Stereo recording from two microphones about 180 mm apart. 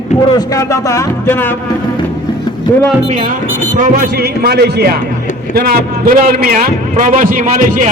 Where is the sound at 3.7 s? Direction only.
50° right (ahead or behind).